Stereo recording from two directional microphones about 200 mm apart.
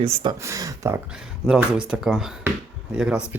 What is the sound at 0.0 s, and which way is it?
Speech, 30° right (ahead or behind).